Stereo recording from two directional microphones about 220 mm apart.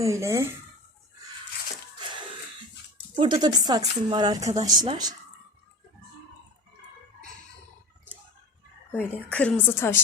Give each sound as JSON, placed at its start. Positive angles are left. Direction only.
{"t": 0.0, "sound": "speech", "side_deg": -15}
{"t": 3.2, "sound": "a woman's voice", "side_deg": -20}
{"t": 9.0, "sound": "a woman's voice", "side_deg": 5}